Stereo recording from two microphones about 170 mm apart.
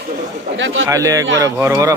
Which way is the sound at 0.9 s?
20° right (ahead or behind).